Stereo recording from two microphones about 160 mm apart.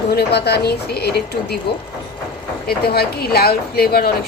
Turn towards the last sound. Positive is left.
turn(degrees=75)  # may be behind; listen again after turning